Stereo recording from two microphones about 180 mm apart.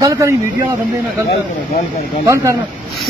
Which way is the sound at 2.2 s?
15° right (ahead or behind).